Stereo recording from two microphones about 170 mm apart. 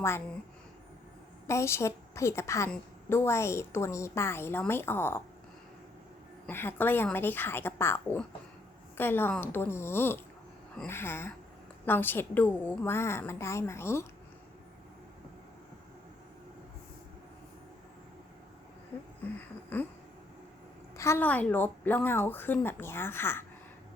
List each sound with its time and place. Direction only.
1.5 s a woman's voice: 15° left (ahead or behind)
6.5 s a woman's voice: 15° left (ahead or behind)
19.7 s a sound: 10° left (ahead or behind)
20.9 s a woman's voice: 15° left (ahead or behind)